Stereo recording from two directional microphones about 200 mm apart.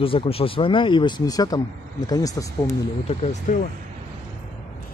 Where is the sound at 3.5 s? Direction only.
40° left (ahead or behind).